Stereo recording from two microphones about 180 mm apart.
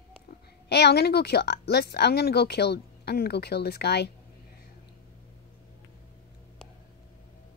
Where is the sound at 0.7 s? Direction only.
65° left (ahead or behind).